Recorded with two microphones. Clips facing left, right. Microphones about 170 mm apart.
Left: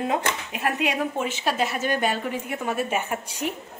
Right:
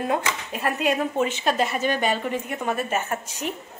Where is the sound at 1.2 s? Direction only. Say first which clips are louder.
Right 3 dB; 5° left (ahead or behind).